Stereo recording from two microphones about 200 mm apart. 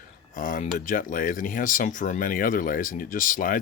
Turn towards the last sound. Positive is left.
turn(degrees=45)  # may be behind; listen again after turning